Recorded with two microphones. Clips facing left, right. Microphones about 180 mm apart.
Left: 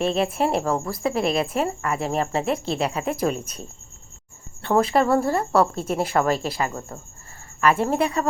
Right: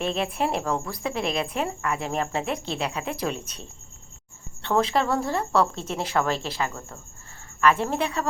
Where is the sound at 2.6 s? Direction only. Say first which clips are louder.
Left 5 dB; 40° left (ahead or behind).